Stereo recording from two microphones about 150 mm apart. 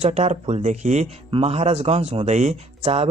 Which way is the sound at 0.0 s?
50° right (ahead or behind).